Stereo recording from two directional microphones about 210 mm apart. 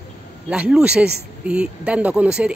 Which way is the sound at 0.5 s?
5° right (ahead or behind).